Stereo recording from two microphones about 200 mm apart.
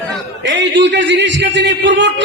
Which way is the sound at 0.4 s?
65° right (ahead or behind).